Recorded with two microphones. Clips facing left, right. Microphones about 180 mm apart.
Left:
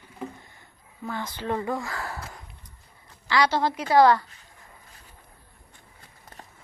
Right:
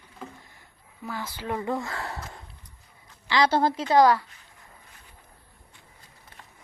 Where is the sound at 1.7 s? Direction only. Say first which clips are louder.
Even; 25° right (ahead or behind).